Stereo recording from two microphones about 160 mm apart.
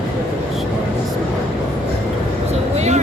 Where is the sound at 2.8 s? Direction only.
45° right (ahead or behind).